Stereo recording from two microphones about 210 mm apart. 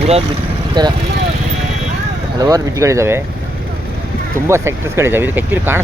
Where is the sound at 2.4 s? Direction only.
15° right (ahead or behind).